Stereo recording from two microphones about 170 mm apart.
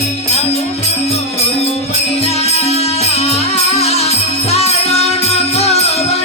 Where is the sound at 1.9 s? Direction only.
40° left (ahead or behind).